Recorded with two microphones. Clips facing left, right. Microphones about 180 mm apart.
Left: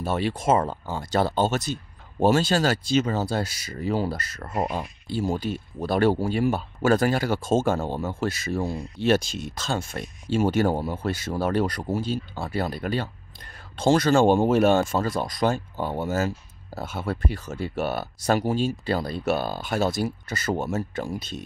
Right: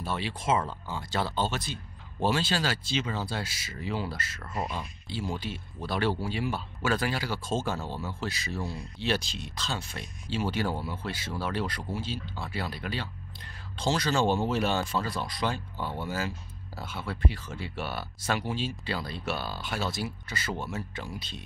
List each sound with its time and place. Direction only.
0.0 s speech: 45° left (ahead or behind)